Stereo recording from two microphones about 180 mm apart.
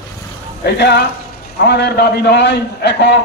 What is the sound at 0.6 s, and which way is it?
A man's voice, 70° left (ahead or behind).